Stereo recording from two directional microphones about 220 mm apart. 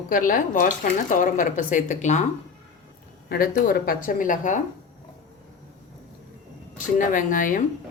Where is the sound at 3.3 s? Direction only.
40° left (ahead or behind).